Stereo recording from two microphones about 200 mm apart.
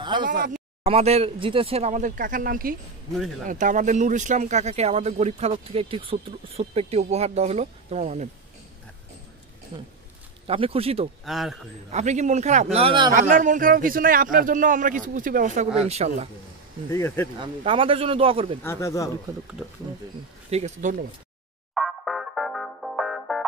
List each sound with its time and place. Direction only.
0.2 s speech: 40° right (ahead or behind)
0.8 s speech: 30° right (ahead or behind)
3.1 s speech: centre (ahead or behind)
3.4 s speech: 40° right (ahead or behind)
9.7 s speech: 25° right (ahead or behind)
11.2 s speech: centre (ahead or behind)
11.9 s speech: 35° right (ahead or behind)
13.1 s speech: 40° right (ahead or behind)
16.9 s speech: 10° left (ahead or behind)
17.4 s speech: 25° right (ahead or behind)
18.6 s speech: 15° left (ahead or behind)
20.4 s speech: 35° right (ahead or behind)
21.7 s music: centre (ahead or behind)